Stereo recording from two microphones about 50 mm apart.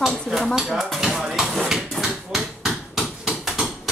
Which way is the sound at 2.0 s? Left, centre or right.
Centre.